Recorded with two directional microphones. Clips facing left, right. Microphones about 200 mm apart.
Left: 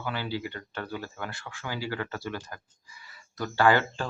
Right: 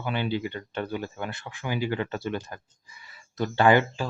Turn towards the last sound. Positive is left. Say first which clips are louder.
# right 3 dB
turn(degrees=-15)  # may be behind; listen again after turning